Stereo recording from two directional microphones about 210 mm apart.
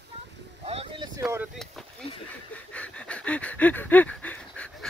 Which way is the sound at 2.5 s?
5° left (ahead or behind).